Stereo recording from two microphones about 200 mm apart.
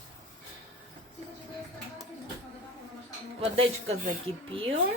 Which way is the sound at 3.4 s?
30° right (ahead or behind).